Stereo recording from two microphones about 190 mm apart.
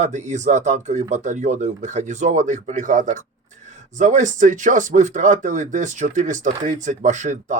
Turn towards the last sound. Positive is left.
turn(degrees=-40)  # may be behind; listen again after turning